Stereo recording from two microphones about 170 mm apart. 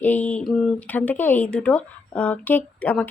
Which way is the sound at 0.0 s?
10° left (ahead or behind).